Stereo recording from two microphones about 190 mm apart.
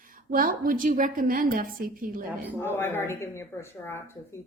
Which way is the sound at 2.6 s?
10° left (ahead or behind).